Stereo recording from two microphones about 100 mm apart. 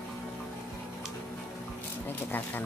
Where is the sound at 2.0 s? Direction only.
20° left (ahead or behind).